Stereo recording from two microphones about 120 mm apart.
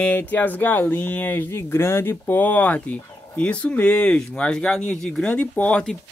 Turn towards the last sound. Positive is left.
turn(degrees=10)  # may be behind; listen again after turning